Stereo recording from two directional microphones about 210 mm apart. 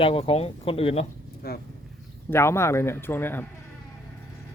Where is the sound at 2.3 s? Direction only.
10° left (ahead or behind).